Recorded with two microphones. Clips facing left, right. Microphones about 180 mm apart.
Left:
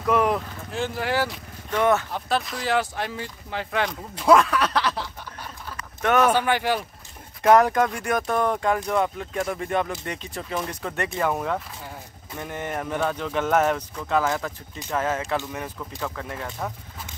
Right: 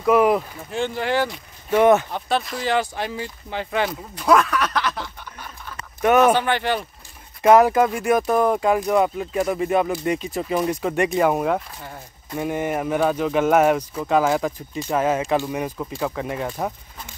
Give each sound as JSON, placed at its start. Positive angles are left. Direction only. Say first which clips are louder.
{"t": 0.0, "sound": "a sound", "louder": "right 5 dB", "side_deg": -10}
{"t": 0.7, "sound": "speech", "louder": "right 3 dB", "side_deg": 5}
{"t": 1.7, "sound": "speech", "louder": "right 6 dB", "side_deg": -20}
{"t": 2.1, "sound": "speech", "louder": "right 2 dB", "side_deg": 0}
{"t": 4.1, "sound": "speech", "louder": "left 1 dB", "side_deg": 25}
{"t": 6.0, "sound": "speech", "louder": "right 4 dB", "side_deg": -10}
{"t": 6.3, "sound": "speech", "louder": "right 1 dB", "side_deg": 10}
{"t": 7.4, "sound": "speech", "louder": "right 3 dB", "side_deg": -5}